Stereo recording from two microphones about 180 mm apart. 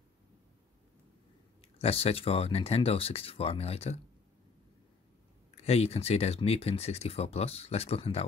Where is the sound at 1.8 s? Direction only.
35° left (ahead or behind).